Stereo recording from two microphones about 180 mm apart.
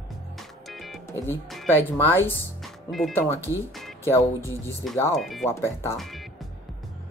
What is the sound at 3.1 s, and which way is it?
Speech, 15° left (ahead or behind).